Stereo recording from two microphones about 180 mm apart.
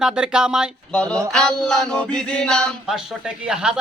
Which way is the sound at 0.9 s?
5° left (ahead or behind).